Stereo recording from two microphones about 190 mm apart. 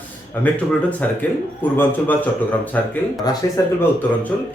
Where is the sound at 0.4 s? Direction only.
5° left (ahead or behind).